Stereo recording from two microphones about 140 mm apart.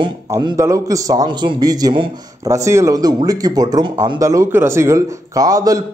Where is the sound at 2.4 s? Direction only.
20° right (ahead or behind).